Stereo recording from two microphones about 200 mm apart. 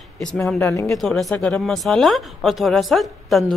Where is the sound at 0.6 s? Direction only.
15° left (ahead or behind).